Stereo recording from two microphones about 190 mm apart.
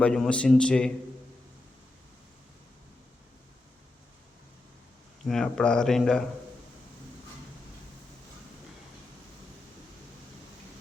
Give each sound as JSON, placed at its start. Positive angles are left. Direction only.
{"t": 0.0, "sound": "a man's voice", "side_deg": 5}
{"t": 5.2, "sound": "a man's voice", "side_deg": 5}